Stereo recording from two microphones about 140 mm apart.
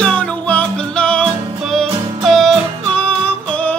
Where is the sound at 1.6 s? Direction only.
Centre (ahead or behind).